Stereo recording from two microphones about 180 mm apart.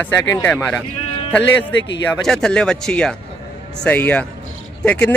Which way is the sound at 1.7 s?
85° left.